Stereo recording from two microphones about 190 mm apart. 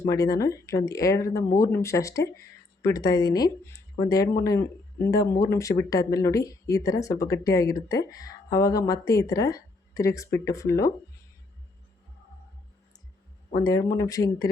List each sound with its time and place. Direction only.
0.0 s speech: 15° left (ahead or behind)
13.5 s speech: 20° left (ahead or behind)